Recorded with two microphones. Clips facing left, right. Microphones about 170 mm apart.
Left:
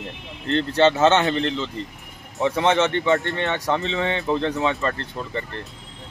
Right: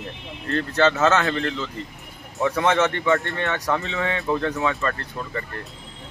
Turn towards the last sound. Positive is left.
turn(degrees=25)  # may be behind; listen again after turning